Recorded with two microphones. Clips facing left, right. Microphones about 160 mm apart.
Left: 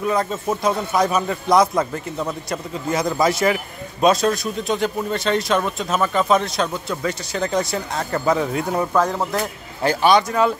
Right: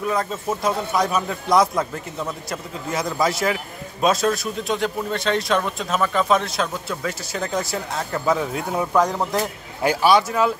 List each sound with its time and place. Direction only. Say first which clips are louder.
0.0 s a man's voice: left 2 dB; centre (ahead or behind)
9.8 s a man's voice: left 1 dB; 5° right (ahead or behind)